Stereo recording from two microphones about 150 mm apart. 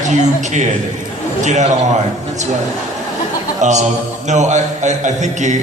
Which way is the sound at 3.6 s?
50° right (ahead or behind).